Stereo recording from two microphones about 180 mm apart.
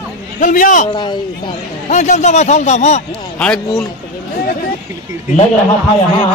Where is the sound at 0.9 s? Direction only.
25° left (ahead or behind).